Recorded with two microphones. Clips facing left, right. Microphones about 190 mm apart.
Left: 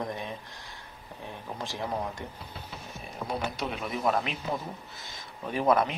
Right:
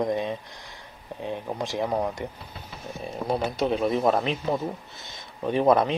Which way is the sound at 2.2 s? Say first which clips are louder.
Right 7 dB; 15° right (ahead or behind).